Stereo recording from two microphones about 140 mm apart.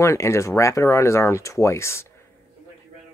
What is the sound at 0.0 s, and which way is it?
Speech, 20° left (ahead or behind).